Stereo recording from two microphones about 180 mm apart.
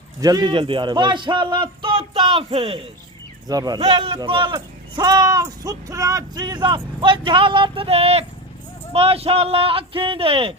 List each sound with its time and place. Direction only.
0.2 s speech: 20° right (ahead or behind)
3.4 s speech: 20° right (ahead or behind)
3.8 s speech: 35° right (ahead or behind)